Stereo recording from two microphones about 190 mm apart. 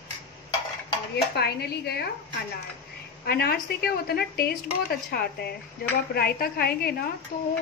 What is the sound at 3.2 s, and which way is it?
A woman's voice, 55° left (ahead or behind).